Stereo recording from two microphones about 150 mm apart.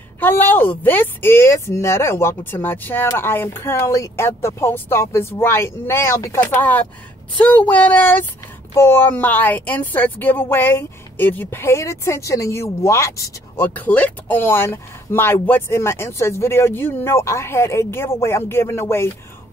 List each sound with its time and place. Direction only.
0.2 s speech: 15° left (ahead or behind)